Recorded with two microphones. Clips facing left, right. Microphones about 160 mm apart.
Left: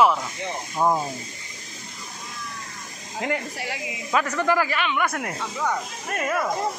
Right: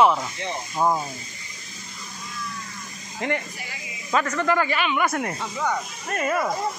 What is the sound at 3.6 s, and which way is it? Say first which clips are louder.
Speech: left 8 dB; 80° left.